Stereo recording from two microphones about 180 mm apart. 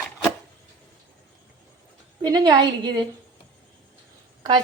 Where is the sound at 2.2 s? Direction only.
25° right (ahead or behind).